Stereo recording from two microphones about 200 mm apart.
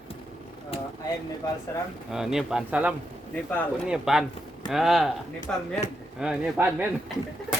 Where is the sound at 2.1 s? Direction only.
Centre (ahead or behind).